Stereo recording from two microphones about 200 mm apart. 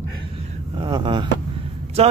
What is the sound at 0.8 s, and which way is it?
Speech, 25° right (ahead or behind).